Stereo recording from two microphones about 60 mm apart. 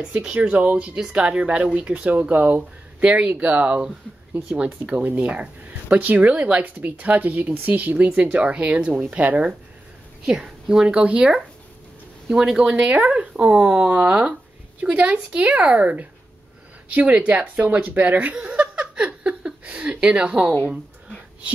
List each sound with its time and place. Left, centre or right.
0.1 s speech: right
10.2 s speech: centre
12.4 s speech: centre
18.4 s a sound: centre
19.7 s a woman's voice: centre